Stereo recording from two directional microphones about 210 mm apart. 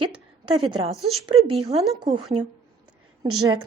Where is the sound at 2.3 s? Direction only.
30° right (ahead or behind).